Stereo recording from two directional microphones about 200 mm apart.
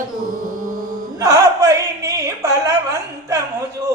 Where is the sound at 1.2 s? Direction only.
15° right (ahead or behind).